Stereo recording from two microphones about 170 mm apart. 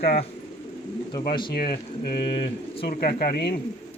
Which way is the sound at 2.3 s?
30° left (ahead or behind).